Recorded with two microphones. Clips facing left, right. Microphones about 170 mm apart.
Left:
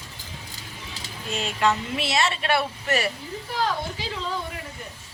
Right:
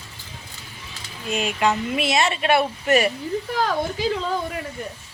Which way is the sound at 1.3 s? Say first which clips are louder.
Right 2 dB; 15° right (ahead or behind).